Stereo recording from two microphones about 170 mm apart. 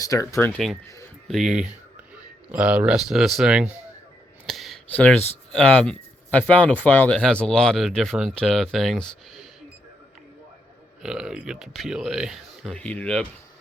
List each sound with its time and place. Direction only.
0.0 s speech: 20° left (ahead or behind)
1.3 s speech: centre (ahead or behind)
4.4 s a sound: centre (ahead or behind)
5.5 s speech: 5° left (ahead or behind)
11.0 s speech: 5° right (ahead or behind)